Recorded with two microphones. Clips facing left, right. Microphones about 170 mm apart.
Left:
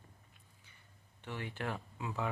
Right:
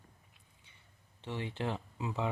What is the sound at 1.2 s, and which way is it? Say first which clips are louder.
Speech: right 4 dB; 25° right (ahead or behind).